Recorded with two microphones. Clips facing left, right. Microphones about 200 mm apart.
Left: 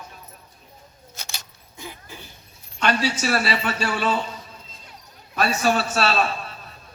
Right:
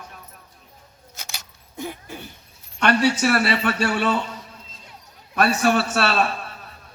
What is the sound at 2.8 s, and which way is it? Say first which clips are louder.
A man's voice: right 4 dB; 60° right (ahead or behind).